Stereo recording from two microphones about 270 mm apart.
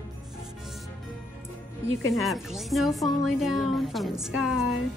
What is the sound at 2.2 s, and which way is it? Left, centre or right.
A woman's voice, centre.